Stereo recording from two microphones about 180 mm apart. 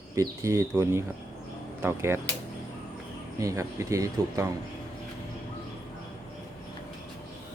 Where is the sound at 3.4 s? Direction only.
15° right (ahead or behind).